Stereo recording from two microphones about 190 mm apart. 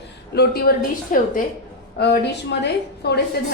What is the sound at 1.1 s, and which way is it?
Speech, 45° left (ahead or behind).